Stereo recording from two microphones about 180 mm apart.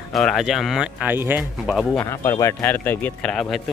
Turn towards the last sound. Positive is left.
turn(degrees=5)  # may be behind; listen again after turning